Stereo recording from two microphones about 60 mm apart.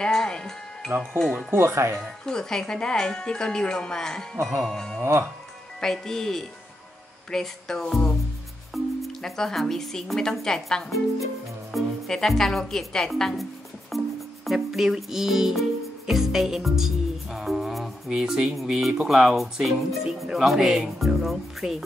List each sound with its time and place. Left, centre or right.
0.0 s speech: centre
1.5 s speech: right
2.2 s speech: centre
16.1 s music: centre
18.1 s speech: centre